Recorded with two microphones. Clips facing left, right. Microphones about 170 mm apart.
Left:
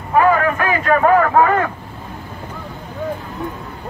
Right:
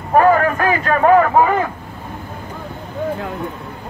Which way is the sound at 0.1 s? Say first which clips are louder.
Right 2 dB; 40° right (ahead or behind).